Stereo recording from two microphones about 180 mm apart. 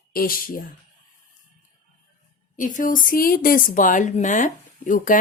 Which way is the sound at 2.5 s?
45° left (ahead or behind).